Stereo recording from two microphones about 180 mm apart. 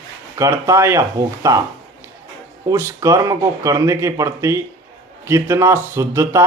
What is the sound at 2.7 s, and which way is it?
Speech, 15° right (ahead or behind).